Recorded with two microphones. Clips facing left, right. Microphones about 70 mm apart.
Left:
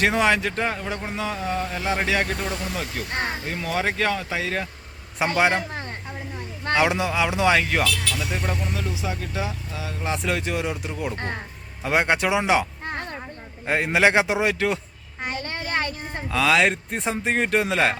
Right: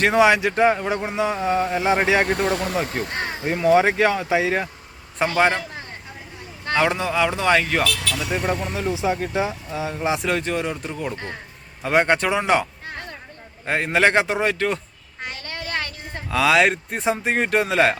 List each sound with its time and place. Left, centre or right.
0.0 s speech: centre; by 2.3 s right
2.4 s speech: right
2.7 s speech: right
3.4 s speech: right
5.4 s speech: centre
6.7 s speech: centre
8.6 s speech: right
10.1 s speech: centre
12.8 s a sound: left
13.7 s speech: centre
15.2 s a sound: left
16.3 s speech: centre